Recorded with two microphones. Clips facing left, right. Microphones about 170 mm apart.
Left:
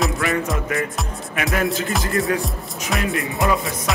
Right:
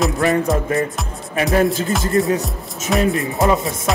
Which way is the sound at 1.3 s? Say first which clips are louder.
Right 6 dB; 30° right (ahead or behind).